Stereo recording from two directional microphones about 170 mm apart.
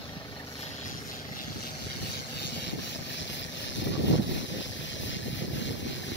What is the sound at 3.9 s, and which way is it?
Vehicle, 90° left.